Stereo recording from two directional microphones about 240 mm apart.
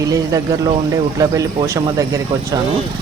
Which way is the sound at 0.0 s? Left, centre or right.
Centre.